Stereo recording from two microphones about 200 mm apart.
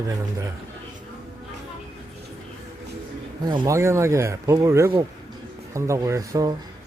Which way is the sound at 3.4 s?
20° right (ahead or behind).